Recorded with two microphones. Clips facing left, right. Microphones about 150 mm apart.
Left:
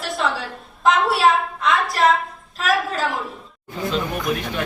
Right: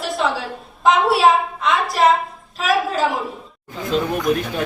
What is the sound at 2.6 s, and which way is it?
Speech, centre (ahead or behind).